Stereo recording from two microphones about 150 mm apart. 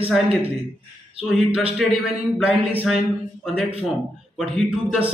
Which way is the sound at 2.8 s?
Centre (ahead or behind).